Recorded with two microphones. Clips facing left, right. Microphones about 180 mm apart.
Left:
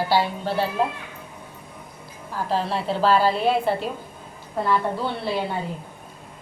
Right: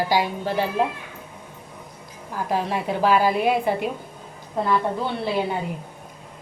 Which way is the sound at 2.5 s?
15° right (ahead or behind).